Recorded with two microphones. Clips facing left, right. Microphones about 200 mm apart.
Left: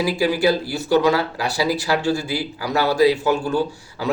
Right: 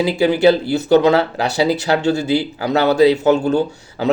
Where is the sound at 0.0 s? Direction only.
25° right (ahead or behind).